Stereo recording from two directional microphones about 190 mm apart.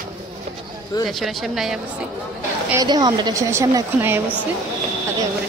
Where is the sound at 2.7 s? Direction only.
20° right (ahead or behind).